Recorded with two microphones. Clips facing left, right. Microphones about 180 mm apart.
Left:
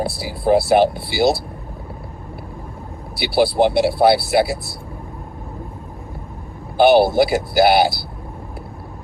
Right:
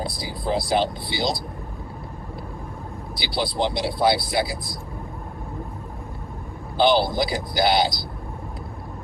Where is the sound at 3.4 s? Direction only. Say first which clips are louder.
Left 10 dB; 65° left (ahead or behind).